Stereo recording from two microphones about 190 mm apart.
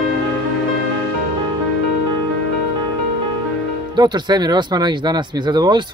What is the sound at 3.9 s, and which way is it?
Speech, 20° right (ahead or behind).